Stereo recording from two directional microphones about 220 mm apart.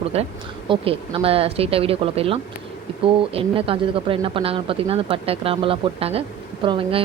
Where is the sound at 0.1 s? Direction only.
30° right (ahead or behind).